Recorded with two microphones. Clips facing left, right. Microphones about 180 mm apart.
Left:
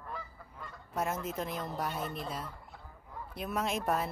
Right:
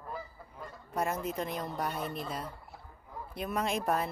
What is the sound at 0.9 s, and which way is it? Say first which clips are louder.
Speech: right 2 dB; centre (ahead or behind).